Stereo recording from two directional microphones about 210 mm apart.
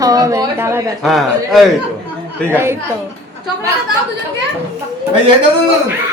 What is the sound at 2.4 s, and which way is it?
Speech, 10° right (ahead or behind).